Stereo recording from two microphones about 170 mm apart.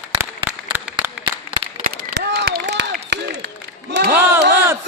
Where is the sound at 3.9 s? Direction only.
90° right.